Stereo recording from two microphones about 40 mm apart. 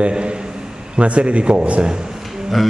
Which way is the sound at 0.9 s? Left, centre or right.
Right.